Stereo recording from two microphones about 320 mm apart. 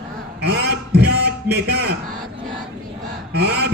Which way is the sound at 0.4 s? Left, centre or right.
Right.